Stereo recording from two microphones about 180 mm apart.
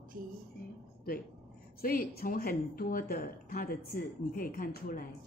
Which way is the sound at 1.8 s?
55° left (ahead or behind).